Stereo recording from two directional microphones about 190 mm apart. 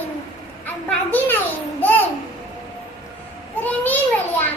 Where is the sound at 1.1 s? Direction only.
10° left (ahead or behind).